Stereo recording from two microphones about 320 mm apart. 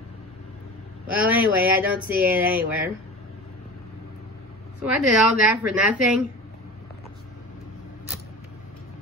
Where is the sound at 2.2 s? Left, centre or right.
Centre.